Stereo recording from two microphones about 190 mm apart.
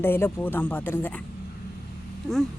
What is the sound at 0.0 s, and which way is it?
Speech, 10° left (ahead or behind).